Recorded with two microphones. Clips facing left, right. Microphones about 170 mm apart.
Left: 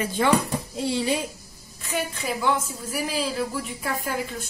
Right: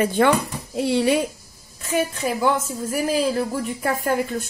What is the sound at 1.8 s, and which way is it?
A woman's voice, 45° right (ahead or behind).